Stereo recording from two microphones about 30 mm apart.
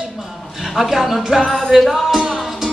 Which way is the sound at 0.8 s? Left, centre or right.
Centre.